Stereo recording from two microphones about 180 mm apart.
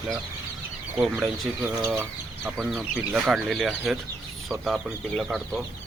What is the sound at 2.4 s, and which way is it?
Speech, centre (ahead or behind).